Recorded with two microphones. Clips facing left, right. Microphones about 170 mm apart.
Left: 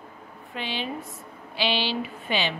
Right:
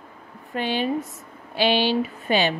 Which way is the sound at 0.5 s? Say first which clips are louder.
Right 8 dB; 45° right (ahead or behind).